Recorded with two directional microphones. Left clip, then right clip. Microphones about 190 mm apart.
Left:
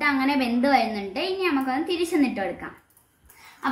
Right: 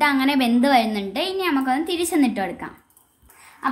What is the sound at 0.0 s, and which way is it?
Speech, 65° right (ahead or behind).